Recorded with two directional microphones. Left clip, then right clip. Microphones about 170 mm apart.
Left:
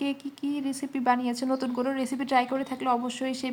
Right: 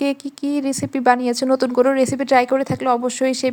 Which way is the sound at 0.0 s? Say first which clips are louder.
Right 9 dB; 50° right (ahead or behind).